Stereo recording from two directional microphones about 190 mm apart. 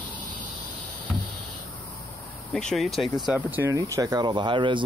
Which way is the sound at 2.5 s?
5° left (ahead or behind).